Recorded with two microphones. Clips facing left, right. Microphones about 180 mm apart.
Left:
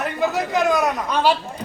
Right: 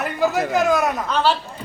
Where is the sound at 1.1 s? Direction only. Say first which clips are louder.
Left 1 dB; 15° left (ahead or behind).